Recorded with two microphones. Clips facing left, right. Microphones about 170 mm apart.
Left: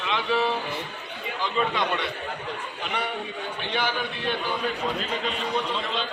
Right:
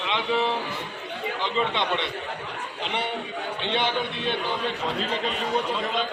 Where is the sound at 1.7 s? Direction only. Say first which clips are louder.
Even; 25° right (ahead or behind).